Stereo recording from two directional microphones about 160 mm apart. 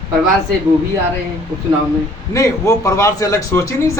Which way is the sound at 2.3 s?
20° left (ahead or behind).